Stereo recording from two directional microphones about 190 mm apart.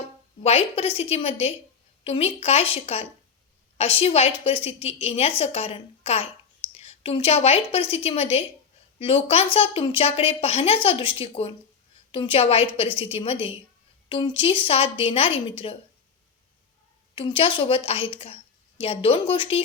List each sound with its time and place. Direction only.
0.4 s a woman's voice: 30° left (ahead or behind)
17.2 s a woman's voice: 30° left (ahead or behind)